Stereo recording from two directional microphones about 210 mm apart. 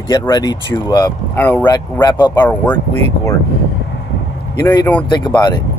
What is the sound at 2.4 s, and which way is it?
Speech, 10° left (ahead or behind).